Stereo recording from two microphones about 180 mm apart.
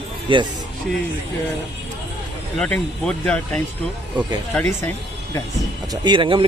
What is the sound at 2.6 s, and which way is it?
Speech, 5° left (ahead or behind).